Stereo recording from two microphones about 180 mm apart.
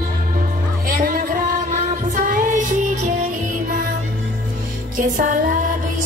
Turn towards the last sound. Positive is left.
turn(degrees=-50)  # may be behind; listen again after turning